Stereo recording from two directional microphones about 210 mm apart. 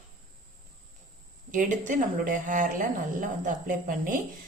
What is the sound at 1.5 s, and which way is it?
A woman's voice, 40° right (ahead or behind).